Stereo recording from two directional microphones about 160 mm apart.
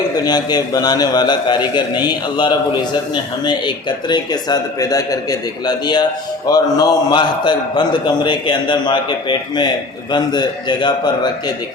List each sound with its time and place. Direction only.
0.3 s a man's voice: 25° left (ahead or behind)